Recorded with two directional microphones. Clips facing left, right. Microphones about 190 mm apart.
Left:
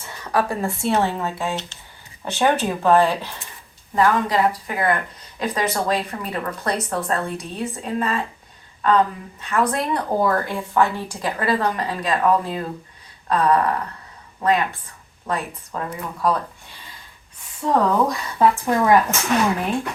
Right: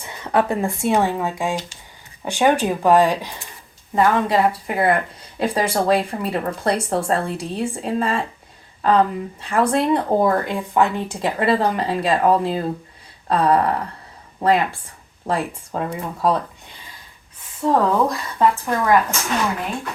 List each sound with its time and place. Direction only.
0.3 s speech: 20° right (ahead or behind)
17.6 s speech: centre (ahead or behind)